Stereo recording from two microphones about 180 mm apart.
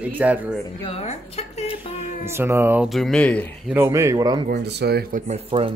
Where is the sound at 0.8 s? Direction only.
35° left (ahead or behind).